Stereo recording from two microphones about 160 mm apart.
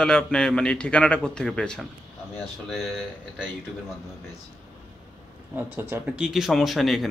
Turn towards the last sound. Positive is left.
turn(degrees=0)  # may be behind; listen again after turning